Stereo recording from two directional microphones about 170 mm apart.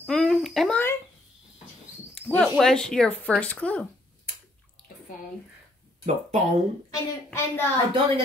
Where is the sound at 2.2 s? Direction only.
10° left (ahead or behind).